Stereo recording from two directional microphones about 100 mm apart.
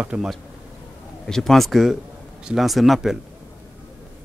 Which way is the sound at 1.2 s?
5° left (ahead or behind).